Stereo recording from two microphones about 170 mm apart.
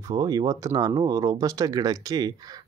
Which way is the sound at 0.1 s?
20° right (ahead or behind).